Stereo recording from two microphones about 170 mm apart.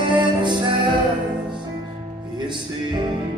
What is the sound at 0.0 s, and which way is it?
Music, 25° right (ahead or behind).